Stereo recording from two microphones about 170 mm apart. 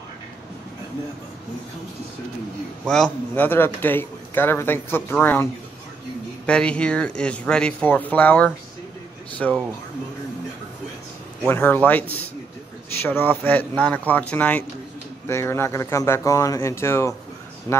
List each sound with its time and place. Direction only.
2.9 s a man's voice: 5° left (ahead or behind)
11.4 s a man's voice: 10° left (ahead or behind)